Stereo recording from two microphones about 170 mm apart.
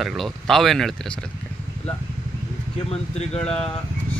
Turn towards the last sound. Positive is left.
turn(degrees=35)  # may be behind; listen again after turning